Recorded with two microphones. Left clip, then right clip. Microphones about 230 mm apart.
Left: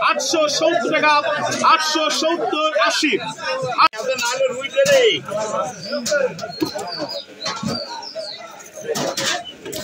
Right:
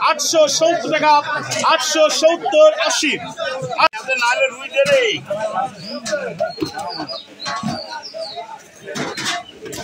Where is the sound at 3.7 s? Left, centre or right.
Right.